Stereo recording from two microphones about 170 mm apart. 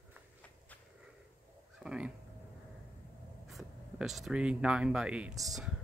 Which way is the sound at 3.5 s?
Centre (ahead or behind).